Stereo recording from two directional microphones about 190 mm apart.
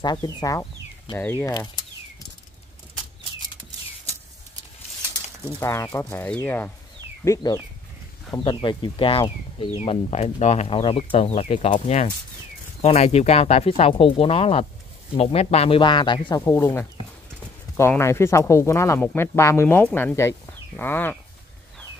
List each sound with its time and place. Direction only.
0.0 s speech: 20° left (ahead or behind)
5.6 s speech: 15° left (ahead or behind)
7.2 s speech: 20° left (ahead or behind)